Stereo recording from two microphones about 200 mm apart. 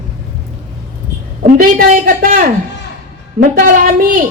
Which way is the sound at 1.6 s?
45° right (ahead or behind).